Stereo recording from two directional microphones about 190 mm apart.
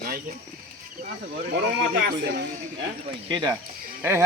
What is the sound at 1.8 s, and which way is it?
Speech, 65° right (ahead or behind).